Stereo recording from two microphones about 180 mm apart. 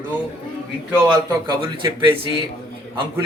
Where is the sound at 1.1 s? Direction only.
20° right (ahead or behind).